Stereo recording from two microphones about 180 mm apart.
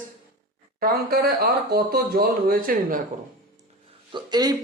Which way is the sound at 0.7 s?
55° right (ahead or behind).